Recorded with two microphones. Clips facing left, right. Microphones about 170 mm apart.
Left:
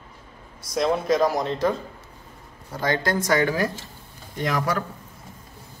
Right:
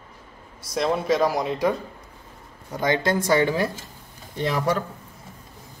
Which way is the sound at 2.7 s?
20° right (ahead or behind).